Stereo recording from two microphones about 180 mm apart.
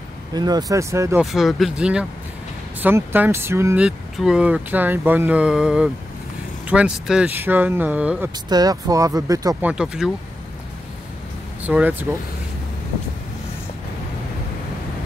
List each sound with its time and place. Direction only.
0.3 s speech: 20° right (ahead or behind)
1.2 s speech: centre (ahead or behind)
8.5 s speech: 20° right (ahead or behind)
9.7 s speech: 5° right (ahead or behind)
11.6 s speech: 10° right (ahead or behind)